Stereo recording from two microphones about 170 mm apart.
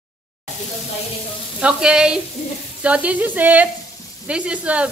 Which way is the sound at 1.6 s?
5° right (ahead or behind).